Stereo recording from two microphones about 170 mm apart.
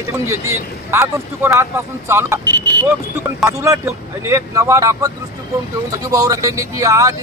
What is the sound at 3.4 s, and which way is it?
A man's voice, 15° right (ahead or behind).